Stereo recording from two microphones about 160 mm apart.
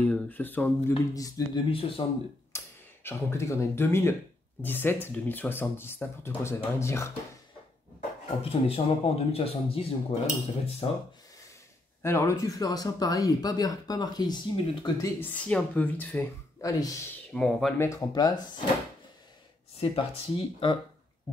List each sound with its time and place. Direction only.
0.0 s speech: 10° left (ahead or behind)
1.7 s speech: 35° left (ahead or behind)
2.5 s speech: 15° left (ahead or behind)
8.4 s speech: 40° left (ahead or behind)
12.0 s speech: 15° left (ahead or behind)
15.1 s speech: 10° left (ahead or behind)
16.6 s speech: 20° left (ahead or behind)
17.3 s speech: centre (ahead or behind)
17.7 s speech: 20° left (ahead or behind)
19.8 s speech: 35° left (ahead or behind)